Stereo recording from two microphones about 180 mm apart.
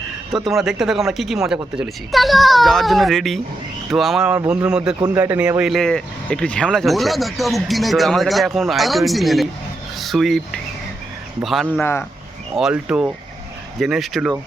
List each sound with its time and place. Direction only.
0.3 s speech: centre (ahead or behind)
11.8 s speech: 15° left (ahead or behind)
12.5 s speech: 5° right (ahead or behind)